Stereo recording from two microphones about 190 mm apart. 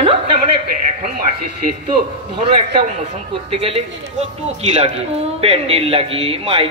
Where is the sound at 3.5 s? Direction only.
30° right (ahead or behind).